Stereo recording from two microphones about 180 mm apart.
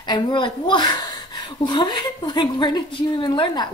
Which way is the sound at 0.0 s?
25° left (ahead or behind).